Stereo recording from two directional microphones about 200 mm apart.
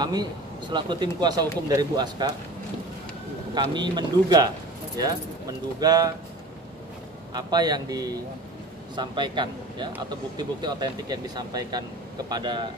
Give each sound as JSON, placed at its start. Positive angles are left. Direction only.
{"t": 0.0, "sound": "speech", "side_deg": -20}
{"t": 3.5, "sound": "speech", "side_deg": -20}
{"t": 7.3, "sound": "speech", "side_deg": -20}